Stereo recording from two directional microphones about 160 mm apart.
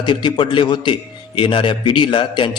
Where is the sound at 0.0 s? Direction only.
30° left (ahead or behind).